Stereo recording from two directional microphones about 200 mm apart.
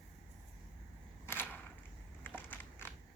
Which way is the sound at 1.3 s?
10° left (ahead or behind).